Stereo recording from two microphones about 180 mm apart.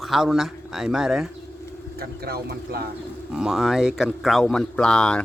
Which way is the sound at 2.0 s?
60° right (ahead or behind).